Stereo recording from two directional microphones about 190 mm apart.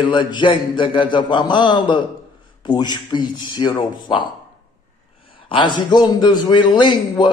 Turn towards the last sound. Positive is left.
turn(degrees=25)  # may be behind; listen again after turning